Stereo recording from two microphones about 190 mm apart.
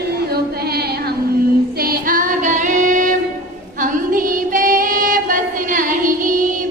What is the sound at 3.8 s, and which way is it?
Female singing, 45° right (ahead or behind).